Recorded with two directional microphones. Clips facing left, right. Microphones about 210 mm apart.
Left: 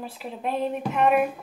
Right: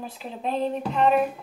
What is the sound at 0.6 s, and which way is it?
Speech, 10° left (ahead or behind).